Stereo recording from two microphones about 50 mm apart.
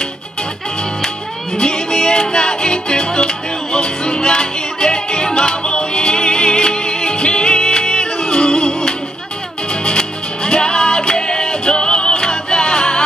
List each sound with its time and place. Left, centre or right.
1.6 s music: centre